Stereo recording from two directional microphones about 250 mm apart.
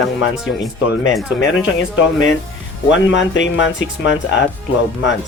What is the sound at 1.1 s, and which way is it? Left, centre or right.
Speech, centre.